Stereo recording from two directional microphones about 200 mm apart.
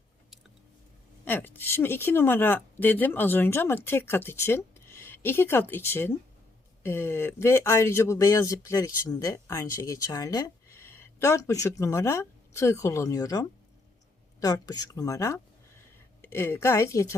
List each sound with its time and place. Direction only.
1.2 s speech: 10° left (ahead or behind)